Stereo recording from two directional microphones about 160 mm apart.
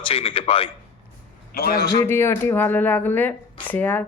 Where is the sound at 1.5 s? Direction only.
70° left (ahead or behind).